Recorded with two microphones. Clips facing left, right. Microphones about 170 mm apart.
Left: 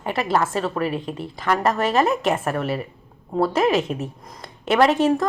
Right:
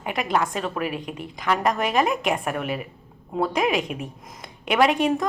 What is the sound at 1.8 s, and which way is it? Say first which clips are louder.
Speech: left 3 dB; 15° right (ahead or behind).